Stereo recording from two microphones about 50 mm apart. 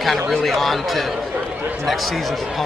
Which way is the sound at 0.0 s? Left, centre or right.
Centre.